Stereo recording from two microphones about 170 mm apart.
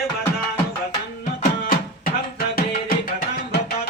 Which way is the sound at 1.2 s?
50° left (ahead or behind).